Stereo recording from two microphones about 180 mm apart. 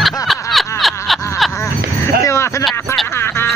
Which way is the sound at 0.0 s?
Centre (ahead or behind).